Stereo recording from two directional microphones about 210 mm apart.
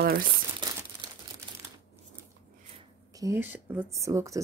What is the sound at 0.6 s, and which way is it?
Crumpling, 20° right (ahead or behind).